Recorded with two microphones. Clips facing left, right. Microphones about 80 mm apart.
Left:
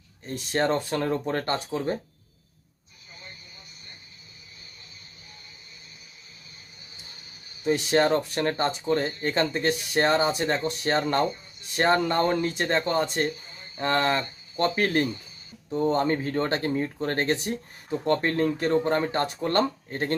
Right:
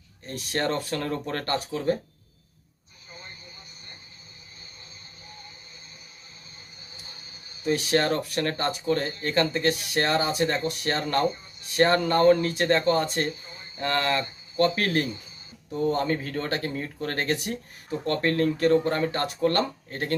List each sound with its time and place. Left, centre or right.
0.5 s speech: left
7.6 s speech: centre